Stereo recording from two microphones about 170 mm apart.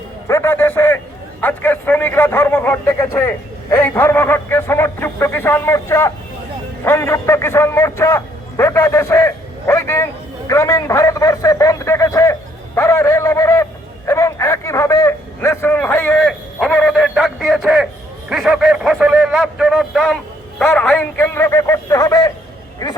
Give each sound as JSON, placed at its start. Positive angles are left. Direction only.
{"t": 0.3, "sound": "a man's voice", "side_deg": 15}